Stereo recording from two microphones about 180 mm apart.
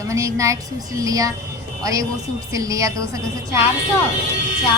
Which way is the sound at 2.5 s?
20° right (ahead or behind).